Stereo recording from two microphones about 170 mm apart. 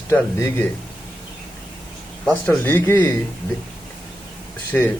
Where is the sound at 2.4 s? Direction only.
10° left (ahead or behind).